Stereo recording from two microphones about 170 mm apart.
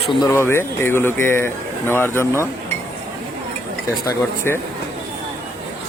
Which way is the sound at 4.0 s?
15° left (ahead or behind).